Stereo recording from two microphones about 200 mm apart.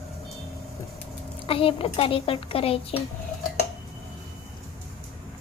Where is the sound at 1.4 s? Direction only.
30° left (ahead or behind).